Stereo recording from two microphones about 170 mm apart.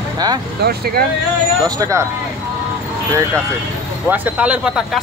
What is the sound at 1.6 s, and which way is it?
Speech, 20° right (ahead or behind).